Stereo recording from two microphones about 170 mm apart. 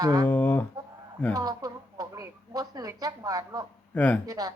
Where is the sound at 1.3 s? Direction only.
20° right (ahead or behind).